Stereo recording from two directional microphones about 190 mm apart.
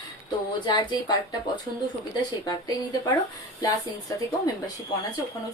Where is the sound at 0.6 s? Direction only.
25° left (ahead or behind).